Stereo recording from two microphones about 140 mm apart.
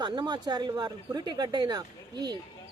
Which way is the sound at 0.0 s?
30° right (ahead or behind).